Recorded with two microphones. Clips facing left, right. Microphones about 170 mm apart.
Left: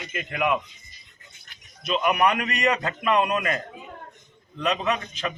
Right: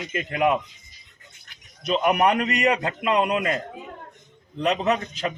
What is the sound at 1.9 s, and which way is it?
A man's voice, 25° right (ahead or behind).